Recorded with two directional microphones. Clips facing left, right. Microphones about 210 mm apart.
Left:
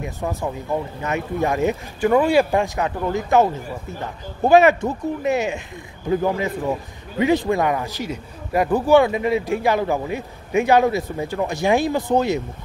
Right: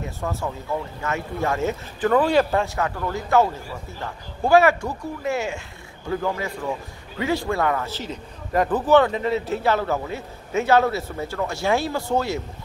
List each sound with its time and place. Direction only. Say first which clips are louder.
0.0 s a man's voice: left 3 dB; 15° left (ahead or behind)